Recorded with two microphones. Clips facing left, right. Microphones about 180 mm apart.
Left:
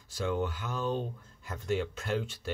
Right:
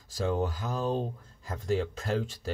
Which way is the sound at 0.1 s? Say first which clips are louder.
Right 2 dB; 35° right (ahead or behind).